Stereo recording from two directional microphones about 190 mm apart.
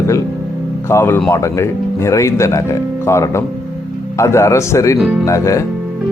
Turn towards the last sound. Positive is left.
turn(degrees=15)  # may be behind; listen again after turning